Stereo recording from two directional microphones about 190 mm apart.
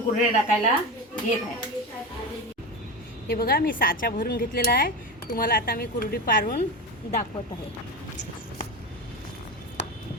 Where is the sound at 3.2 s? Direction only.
55° left (ahead or behind).